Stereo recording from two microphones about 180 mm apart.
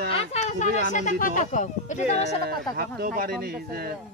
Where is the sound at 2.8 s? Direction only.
55° right (ahead or behind).